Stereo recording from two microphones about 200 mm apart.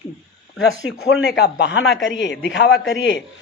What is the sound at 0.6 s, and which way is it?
Speech, 60° left (ahead or behind).